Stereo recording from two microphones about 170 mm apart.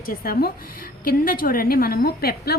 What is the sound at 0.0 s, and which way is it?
A woman's voice, 60° left (ahead or behind).